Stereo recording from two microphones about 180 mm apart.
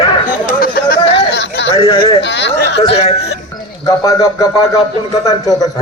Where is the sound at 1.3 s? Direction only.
75° left (ahead or behind).